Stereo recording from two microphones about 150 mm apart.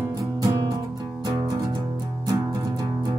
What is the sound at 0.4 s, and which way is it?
Music, 25° right (ahead or behind).